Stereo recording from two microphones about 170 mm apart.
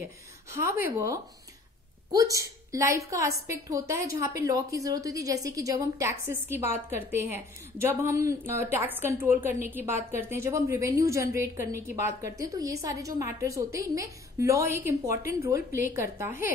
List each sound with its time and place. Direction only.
0.0 s a woman's voice: 15° right (ahead or behind)